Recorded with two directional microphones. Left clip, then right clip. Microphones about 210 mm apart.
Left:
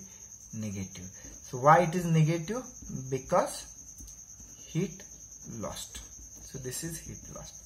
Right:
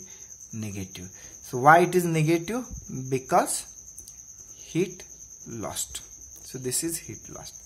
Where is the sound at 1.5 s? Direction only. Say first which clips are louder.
Right 5 dB; 50° right (ahead or behind).